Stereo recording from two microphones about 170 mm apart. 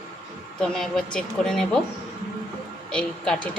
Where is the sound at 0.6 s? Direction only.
5° left (ahead or behind).